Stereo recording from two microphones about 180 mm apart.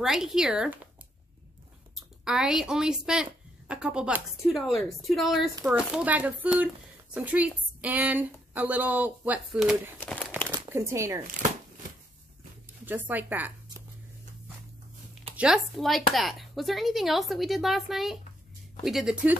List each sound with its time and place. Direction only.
0.0 s a woman's voice: 5° right (ahead or behind)
2.2 s a woman's voice: 5° right (ahead or behind)
9.9 s crumpling: 5° left (ahead or behind)
10.7 s a woman's voice: 15° right (ahead or behind)
12.8 s a woman's voice: 10° right (ahead or behind)
15.3 s a woman's voice: 5° right (ahead or behind)